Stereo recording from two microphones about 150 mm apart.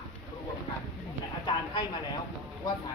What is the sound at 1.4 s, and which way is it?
Speech, 30° left (ahead or behind).